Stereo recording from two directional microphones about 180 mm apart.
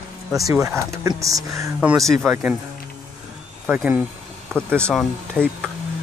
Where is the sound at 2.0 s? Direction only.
Centre (ahead or behind).